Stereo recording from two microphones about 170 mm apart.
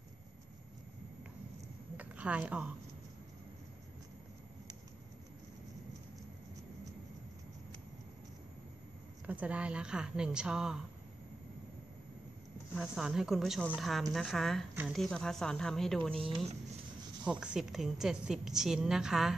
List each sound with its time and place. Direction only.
2.0 s a sound: 10° right (ahead or behind)
9.2 s a woman's voice: 10° right (ahead or behind)
12.7 s a woman's voice: centre (ahead or behind)
16.3 s speech: 30° right (ahead or behind)
17.2 s a woman's voice: 5° right (ahead or behind)